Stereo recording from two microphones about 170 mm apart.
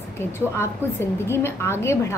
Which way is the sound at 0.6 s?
15° left (ahead or behind).